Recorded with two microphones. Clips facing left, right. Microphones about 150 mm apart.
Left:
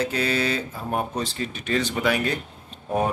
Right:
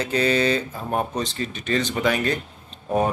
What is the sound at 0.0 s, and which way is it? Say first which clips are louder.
Speech: right 3 dB; 5° left (ahead or behind).